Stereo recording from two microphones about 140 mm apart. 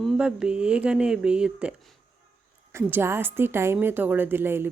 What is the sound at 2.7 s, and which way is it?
Speech, 15° right (ahead or behind).